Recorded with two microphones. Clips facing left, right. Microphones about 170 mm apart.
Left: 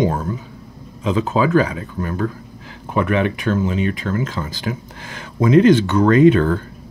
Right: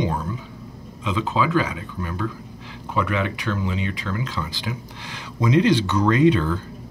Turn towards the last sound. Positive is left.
turn(degrees=55)  # may be behind; listen again after turning